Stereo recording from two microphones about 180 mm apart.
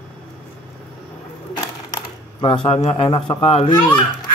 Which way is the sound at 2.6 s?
30° left (ahead or behind).